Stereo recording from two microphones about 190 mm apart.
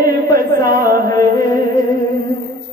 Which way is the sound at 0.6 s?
20° left (ahead or behind).